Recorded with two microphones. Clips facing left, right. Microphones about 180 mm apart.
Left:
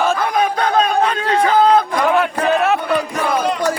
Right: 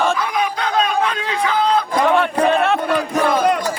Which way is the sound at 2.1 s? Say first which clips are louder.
Even; 5° left (ahead or behind).